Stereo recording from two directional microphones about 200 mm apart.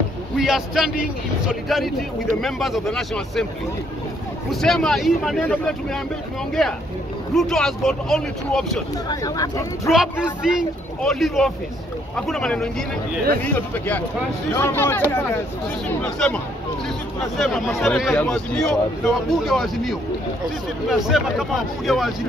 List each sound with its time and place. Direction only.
0.4 s a man's voice: centre (ahead or behind)
4.5 s a man's voice: centre (ahead or behind)
9.1 s speech: 15° left (ahead or behind)
9.8 s a man's voice: 5° right (ahead or behind)
17.7 s a man's voice: centre (ahead or behind)